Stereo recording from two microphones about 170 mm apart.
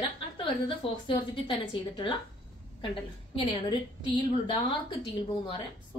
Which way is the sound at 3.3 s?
30° left (ahead or behind).